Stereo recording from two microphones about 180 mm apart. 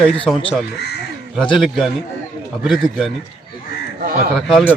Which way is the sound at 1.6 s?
Centre (ahead or behind).